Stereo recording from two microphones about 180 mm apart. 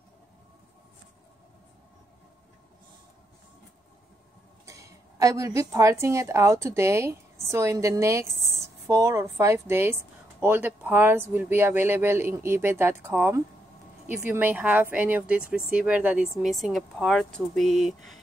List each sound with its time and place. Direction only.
4.6 s a woman's voice: 15° right (ahead or behind); by 18.2 s centre (ahead or behind)